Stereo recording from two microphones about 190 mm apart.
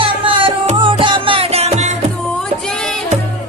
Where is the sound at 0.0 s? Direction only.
30° right (ahead or behind).